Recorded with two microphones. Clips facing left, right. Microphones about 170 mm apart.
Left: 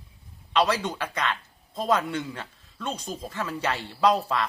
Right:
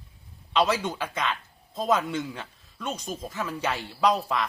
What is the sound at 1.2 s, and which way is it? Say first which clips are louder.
Music: even; 5° right (ahead or behind).